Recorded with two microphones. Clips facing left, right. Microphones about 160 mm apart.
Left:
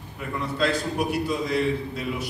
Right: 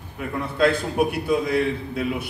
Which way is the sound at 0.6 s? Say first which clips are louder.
Right 6 dB; 55° right (ahead or behind).